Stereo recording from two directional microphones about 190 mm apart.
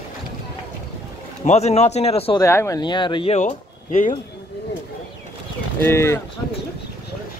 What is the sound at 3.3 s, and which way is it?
Speech, 40° left (ahead or behind).